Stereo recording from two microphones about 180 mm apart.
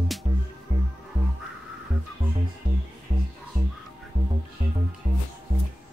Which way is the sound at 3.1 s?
50° right (ahead or behind).